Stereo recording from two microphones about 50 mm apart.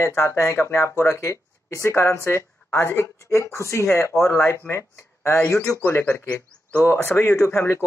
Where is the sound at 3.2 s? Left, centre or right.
Left.